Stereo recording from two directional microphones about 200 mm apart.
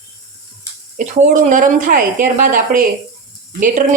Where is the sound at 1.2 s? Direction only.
40° right (ahead or behind).